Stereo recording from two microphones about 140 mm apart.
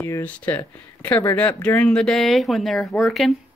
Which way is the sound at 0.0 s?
20° left (ahead or behind).